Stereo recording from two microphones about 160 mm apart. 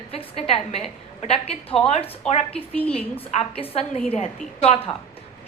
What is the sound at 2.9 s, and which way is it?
A woman's voice, 35° left (ahead or behind).